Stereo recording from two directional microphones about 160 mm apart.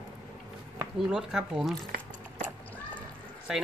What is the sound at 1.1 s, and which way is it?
Speech, 5° right (ahead or behind).